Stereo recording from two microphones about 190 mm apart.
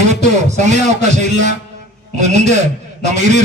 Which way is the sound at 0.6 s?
40° right (ahead or behind).